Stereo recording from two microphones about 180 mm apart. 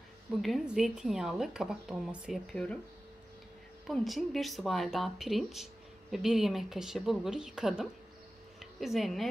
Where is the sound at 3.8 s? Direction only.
Centre (ahead or behind).